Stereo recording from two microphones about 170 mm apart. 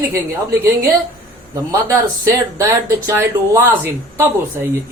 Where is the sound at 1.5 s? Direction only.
20° right (ahead or behind).